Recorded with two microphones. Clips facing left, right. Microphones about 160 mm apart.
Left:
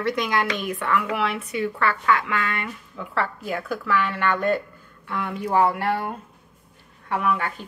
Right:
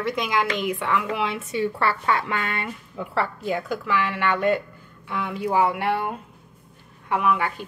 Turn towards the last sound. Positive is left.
turn(degrees=-15)  # may be behind; listen again after turning